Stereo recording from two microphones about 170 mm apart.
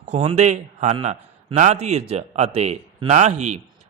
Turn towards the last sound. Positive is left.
turn(degrees=-45)  # may be behind; listen again after turning